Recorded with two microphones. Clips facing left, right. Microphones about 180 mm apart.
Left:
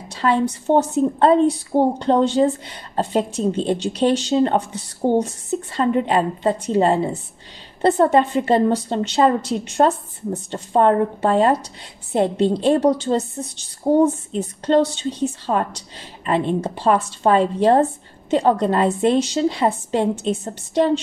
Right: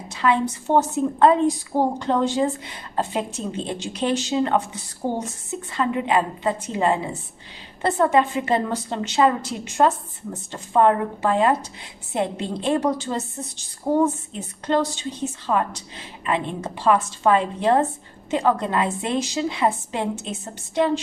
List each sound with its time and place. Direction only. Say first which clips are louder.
0.1 s speech: left 2 dB; 35° left (ahead or behind)